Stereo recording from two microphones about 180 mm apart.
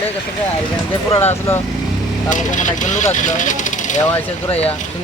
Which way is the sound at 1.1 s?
15° left (ahead or behind).